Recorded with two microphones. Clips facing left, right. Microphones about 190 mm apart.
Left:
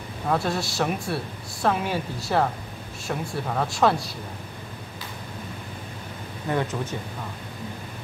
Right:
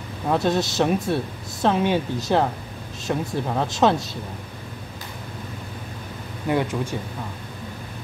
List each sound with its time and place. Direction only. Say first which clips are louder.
0.3 s speech: right 4 dB; 20° right (ahead or behind)
6.5 s speech: right 3 dB; 10° right (ahead or behind)